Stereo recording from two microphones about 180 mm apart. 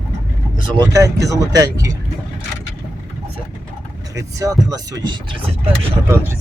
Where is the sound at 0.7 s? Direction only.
20° right (ahead or behind).